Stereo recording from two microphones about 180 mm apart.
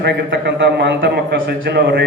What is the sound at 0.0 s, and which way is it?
A man's voice, 75° right (ahead or behind).